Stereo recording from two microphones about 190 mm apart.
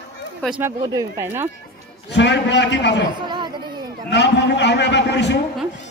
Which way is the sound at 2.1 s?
70° left (ahead or behind).